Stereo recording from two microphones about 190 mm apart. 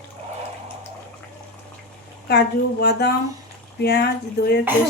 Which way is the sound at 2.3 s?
60° left (ahead or behind).